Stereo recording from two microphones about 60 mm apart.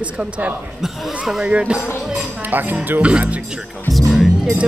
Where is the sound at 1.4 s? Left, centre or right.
Centre.